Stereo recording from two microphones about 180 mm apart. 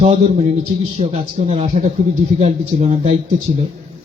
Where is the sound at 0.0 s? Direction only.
35° right (ahead or behind).